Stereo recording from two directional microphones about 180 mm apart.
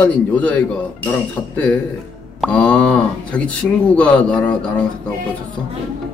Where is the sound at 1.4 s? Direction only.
20° left (ahead or behind).